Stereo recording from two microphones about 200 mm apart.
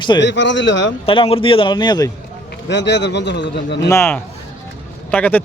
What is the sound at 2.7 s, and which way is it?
A man's voice, 60° left (ahead or behind).